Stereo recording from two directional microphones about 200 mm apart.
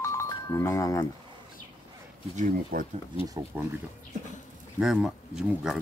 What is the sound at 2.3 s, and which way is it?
Speech, 45° right (ahead or behind).